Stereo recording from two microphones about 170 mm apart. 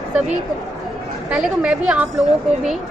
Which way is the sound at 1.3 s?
5° right (ahead or behind).